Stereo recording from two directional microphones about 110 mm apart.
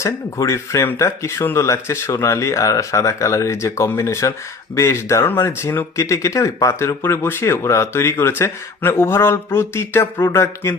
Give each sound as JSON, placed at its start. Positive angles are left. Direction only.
{"t": 0.0, "sound": "speech", "side_deg": 25}